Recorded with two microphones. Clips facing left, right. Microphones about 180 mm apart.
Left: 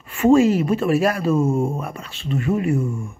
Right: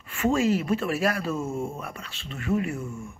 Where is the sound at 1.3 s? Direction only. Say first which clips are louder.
Left 10 dB; 55° left (ahead or behind).